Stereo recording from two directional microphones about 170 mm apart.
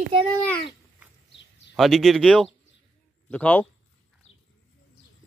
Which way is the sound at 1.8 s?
Centre (ahead or behind).